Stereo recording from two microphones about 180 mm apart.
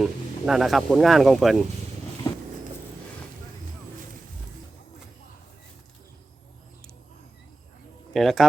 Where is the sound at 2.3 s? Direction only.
20° left (ahead or behind).